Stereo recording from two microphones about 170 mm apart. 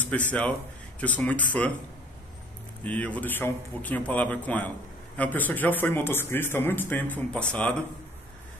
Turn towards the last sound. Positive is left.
turn(degrees=5)  # may be behind; listen again after turning